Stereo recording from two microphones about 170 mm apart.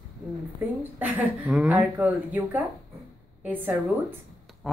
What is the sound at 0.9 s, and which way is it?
Speech, 10° right (ahead or behind).